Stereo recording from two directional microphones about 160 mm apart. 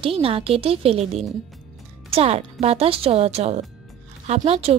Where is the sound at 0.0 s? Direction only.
35° right (ahead or behind).